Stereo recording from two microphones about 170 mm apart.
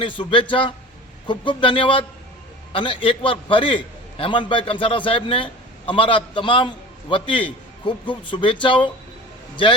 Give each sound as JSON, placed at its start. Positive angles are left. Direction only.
{"t": 0.0, "sound": "a man's voice", "side_deg": 30}